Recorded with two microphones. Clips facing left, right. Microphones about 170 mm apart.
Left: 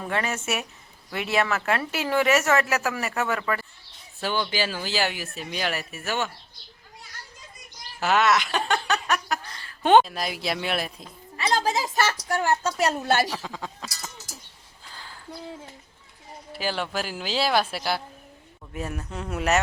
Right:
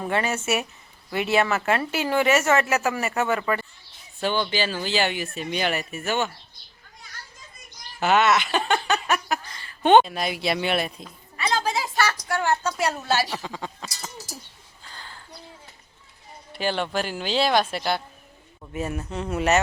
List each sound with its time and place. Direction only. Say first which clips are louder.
0.0 s speech: right 3 dB; centre (ahead or behind)
7.9 s speech: right 2 dB; centre (ahead or behind)
11.3 s a woman's voice: left 1 dB; 35° left (ahead or behind)
13.1 s a woman's voice: left 1 dB; 50° left (ahead or behind)
13.3 s speech: right 1 dB; centre (ahead or behind)
14.8 s a sound: right 1 dB; 5° left (ahead or behind)
16.5 s speech: right 3 dB; 5° left (ahead or behind)